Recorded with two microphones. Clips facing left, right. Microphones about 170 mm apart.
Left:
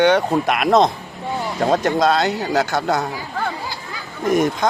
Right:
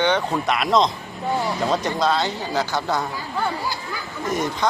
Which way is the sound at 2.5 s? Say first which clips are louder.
Left 3 dB; 60° left (ahead or behind).